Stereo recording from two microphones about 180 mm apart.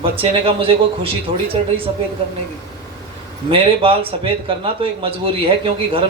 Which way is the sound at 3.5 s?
30° right (ahead or behind).